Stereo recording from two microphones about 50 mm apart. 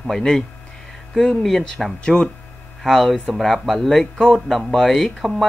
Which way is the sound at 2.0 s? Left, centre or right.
Centre.